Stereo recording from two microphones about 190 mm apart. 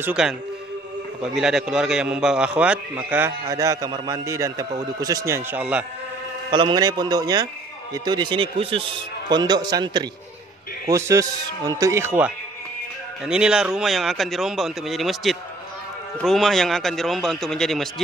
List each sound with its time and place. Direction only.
0.0 s a man's voice: 5° right (ahead or behind)
6.5 s a man's voice: 25° right (ahead or behind); by 18.0 s centre (ahead or behind)